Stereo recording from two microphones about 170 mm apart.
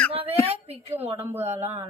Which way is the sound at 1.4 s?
40° right (ahead or behind).